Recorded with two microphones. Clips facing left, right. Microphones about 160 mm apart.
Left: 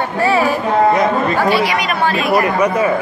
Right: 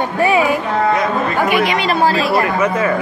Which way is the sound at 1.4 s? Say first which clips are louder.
Even; 20° right (ahead or behind).